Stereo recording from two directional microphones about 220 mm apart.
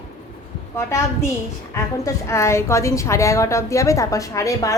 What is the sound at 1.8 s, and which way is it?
A woman's voice, 15° left (ahead or behind).